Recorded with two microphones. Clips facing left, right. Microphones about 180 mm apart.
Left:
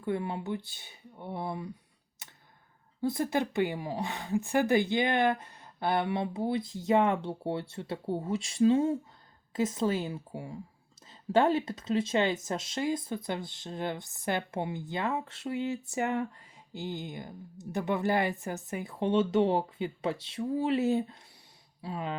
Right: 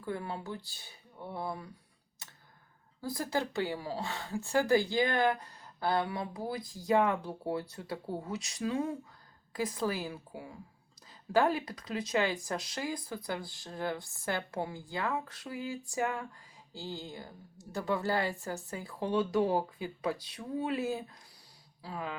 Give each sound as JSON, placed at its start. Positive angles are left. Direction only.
{"t": 0.0, "sound": "speech", "side_deg": 20}
{"t": 2.2, "sound": "tick-tock", "side_deg": 20}
{"t": 3.0, "sound": "speech", "side_deg": 25}